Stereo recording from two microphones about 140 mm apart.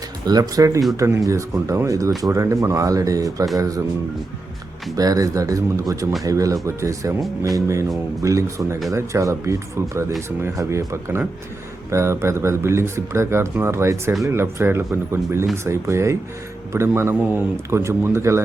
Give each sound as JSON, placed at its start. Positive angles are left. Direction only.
{"t": 0.3, "sound": "speech", "side_deg": -25}
{"t": 4.9, "sound": "speech", "side_deg": -25}